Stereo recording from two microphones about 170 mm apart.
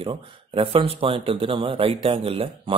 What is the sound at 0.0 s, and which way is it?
Speech, 30° right (ahead or behind).